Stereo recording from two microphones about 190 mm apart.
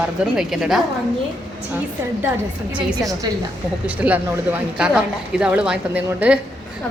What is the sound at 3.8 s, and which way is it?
A woman's voice, 5° right (ahead or behind).